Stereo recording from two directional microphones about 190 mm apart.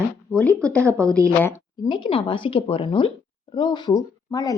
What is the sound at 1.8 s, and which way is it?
Speech, 25° left (ahead or behind).